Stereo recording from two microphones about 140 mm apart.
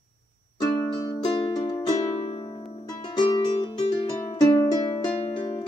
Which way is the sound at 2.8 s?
30° left (ahead or behind).